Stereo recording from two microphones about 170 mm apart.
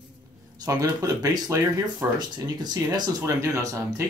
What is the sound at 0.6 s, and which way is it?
Speech, 20° right (ahead or behind).